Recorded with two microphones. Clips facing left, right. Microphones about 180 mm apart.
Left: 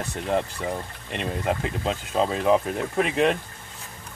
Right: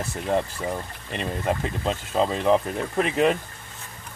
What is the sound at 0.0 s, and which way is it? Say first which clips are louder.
Speech: right 1 dB; centre (ahead or behind).